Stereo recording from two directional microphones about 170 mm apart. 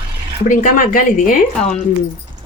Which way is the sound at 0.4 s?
50° left (ahead or behind).